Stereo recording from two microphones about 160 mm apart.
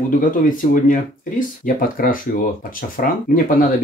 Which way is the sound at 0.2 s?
60° left (ahead or behind).